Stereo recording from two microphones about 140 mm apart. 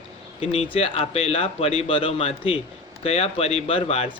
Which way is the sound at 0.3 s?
45° left (ahead or behind).